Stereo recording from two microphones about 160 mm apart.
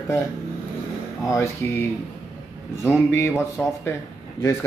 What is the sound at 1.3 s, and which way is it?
Speech, 20° left (ahead or behind).